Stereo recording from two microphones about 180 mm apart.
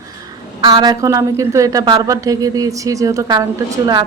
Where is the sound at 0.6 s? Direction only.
20° right (ahead or behind).